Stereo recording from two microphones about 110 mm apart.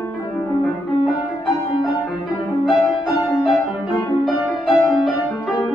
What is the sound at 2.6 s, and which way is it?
Music, 45° left (ahead or behind).